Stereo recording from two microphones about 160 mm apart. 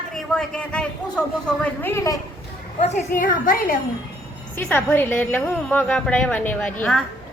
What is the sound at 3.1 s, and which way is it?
Speech, 55° left (ahead or behind).